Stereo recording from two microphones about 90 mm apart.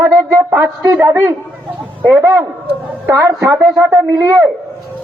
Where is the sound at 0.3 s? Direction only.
30° right (ahead or behind).